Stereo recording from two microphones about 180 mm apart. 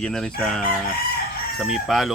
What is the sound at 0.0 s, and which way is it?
Speech, 5° left (ahead or behind).